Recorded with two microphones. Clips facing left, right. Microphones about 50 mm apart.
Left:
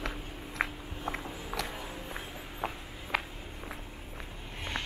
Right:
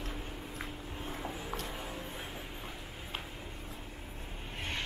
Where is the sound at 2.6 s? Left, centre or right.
Left.